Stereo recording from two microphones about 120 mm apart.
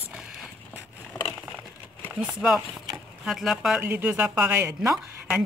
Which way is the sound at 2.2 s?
5° right (ahead or behind).